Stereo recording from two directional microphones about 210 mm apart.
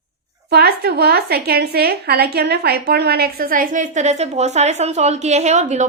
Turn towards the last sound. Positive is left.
turn(degrees=-35)  # may be behind; listen again after turning